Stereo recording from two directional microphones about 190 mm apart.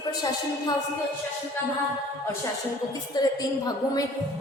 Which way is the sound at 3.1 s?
20° left (ahead or behind).